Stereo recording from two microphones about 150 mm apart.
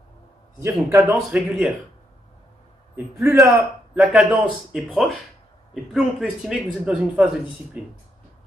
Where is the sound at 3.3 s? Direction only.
Centre (ahead or behind).